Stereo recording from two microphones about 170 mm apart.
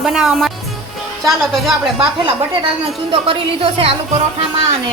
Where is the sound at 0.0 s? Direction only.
5° right (ahead or behind).